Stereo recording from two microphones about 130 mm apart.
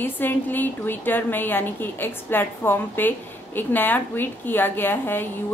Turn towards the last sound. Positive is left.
turn(degrees=15)  # may be behind; listen again after turning